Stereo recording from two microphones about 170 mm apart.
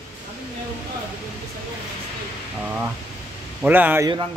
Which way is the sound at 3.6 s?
10° right (ahead or behind).